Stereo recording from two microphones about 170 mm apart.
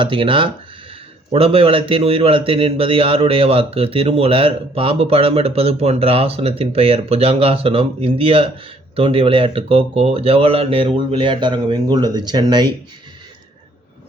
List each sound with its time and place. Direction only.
0.0 s a man's voice: 30° right (ahead or behind)